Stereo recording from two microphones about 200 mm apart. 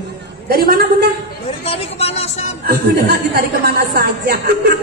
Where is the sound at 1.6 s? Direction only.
30° left (ahead or behind).